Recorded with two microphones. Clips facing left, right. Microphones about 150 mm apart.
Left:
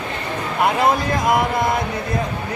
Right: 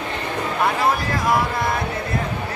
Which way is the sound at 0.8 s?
20° left (ahead or behind).